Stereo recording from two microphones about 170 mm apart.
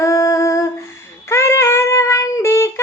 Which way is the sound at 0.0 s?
20° left (ahead or behind).